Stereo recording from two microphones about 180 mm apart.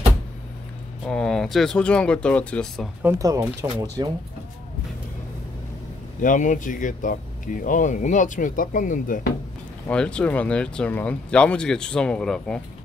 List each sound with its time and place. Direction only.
1.0 s speech: 5° left (ahead or behind)
3.0 s speech: 15° right (ahead or behind)
6.2 s speech: 45° left (ahead or behind)
9.8 s speech: 5° left (ahead or behind)